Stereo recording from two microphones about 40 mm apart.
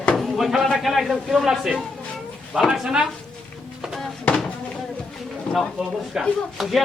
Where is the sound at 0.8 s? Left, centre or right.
Centre.